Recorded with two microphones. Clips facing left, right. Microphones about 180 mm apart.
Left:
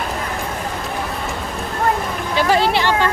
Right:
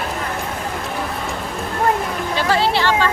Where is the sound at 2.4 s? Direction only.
15° left (ahead or behind).